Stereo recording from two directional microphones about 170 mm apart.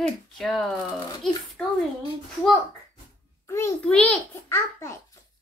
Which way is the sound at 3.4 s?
20° left (ahead or behind).